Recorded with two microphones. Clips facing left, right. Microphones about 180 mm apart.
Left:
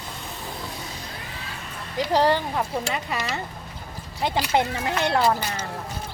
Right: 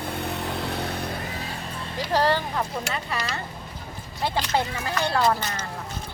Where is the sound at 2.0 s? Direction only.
15° left (ahead or behind).